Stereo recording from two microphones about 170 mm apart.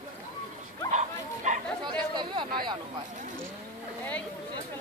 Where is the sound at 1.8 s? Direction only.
25° right (ahead or behind).